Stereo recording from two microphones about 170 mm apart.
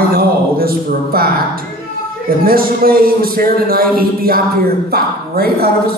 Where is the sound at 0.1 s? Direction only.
65° right (ahead or behind).